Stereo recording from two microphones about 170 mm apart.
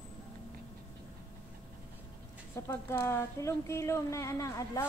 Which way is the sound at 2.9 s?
15° left (ahead or behind).